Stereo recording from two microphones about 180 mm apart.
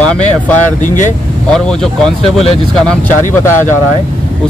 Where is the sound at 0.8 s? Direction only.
45° left (ahead or behind).